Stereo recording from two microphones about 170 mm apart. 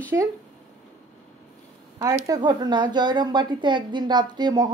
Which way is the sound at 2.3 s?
25° right (ahead or behind).